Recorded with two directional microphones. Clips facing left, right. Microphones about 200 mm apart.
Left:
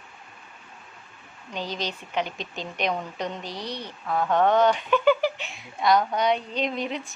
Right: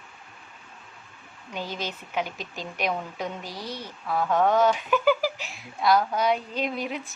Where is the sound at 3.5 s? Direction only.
20° left (ahead or behind).